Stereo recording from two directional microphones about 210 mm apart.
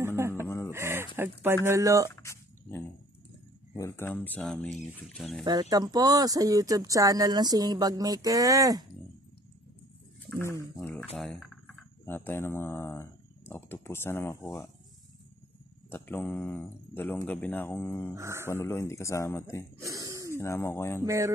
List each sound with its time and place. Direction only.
0.0 s a sound: 10° right (ahead or behind)
0.7 s speech: 10° right (ahead or behind)
2.0 s a sound: 15° left (ahead or behind)
3.7 s speech: 10° left (ahead or behind)
5.4 s speech: 20° right (ahead or behind)
10.8 s speech: 5° left (ahead or behind)
15.9 s speech: 10° left (ahead or behind)
18.1 s speech: 15° right (ahead or behind)
18.5 s speech: 10° left (ahead or behind)
19.8 s a sound: 15° right (ahead or behind)
20.3 s speech: 10° left (ahead or behind)
21.0 s speech: 15° right (ahead or behind)